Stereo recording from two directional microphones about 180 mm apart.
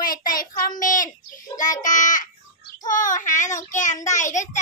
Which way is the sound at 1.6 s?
45° left (ahead or behind).